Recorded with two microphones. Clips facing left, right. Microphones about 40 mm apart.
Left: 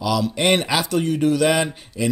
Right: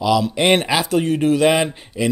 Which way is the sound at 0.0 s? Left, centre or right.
Centre.